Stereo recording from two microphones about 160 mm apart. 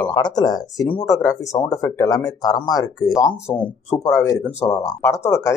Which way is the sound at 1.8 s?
20° left (ahead or behind).